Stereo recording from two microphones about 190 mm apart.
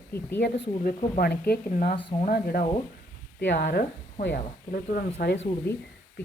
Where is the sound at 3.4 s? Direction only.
65° left (ahead or behind).